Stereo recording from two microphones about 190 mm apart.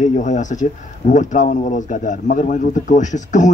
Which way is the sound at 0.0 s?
40° left (ahead or behind).